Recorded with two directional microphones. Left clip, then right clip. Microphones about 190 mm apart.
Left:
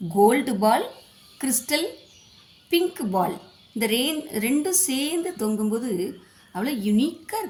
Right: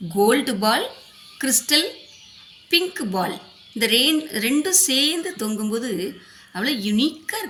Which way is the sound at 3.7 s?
50° left (ahead or behind).